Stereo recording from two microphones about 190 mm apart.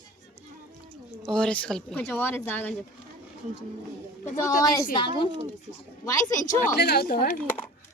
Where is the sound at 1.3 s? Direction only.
5° left (ahead or behind).